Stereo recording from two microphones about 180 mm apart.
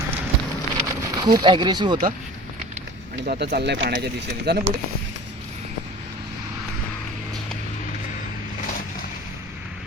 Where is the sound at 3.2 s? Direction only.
60° right (ahead or behind).